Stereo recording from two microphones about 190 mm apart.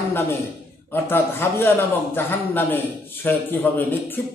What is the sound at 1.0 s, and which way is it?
Mantra, 10° left (ahead or behind).